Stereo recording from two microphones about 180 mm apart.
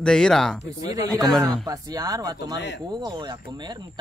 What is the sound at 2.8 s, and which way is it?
Speech, 25° right (ahead or behind).